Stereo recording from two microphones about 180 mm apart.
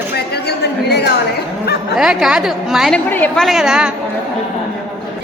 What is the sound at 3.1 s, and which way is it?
Speech, 10° left (ahead or behind).